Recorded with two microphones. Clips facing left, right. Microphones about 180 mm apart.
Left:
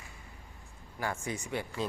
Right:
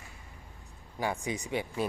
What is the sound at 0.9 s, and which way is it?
Speech, 15° right (ahead or behind).